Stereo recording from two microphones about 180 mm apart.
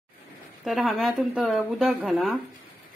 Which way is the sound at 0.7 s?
Centre (ahead or behind).